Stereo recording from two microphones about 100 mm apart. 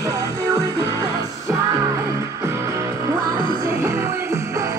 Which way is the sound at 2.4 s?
25° right (ahead or behind).